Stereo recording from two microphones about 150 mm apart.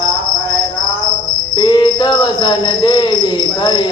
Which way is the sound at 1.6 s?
30° left (ahead or behind).